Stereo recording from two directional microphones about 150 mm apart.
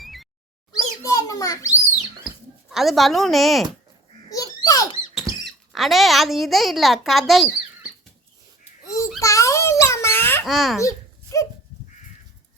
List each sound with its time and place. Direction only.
0.0 s a sound: centre (ahead or behind)
0.7 s bird: 20° left (ahead or behind)
2.6 s a child's voice: centre (ahead or behind)
4.3 s a sound: 25° left (ahead or behind)
5.3 s rodents: 20° right (ahead or behind)
5.7 s a child's voice: centre (ahead or behind)
9.2 s babbling: 20° left (ahead or behind)
10.4 s a child's voice: centre (ahead or behind)
10.8 s a sound: 20° left (ahead or behind)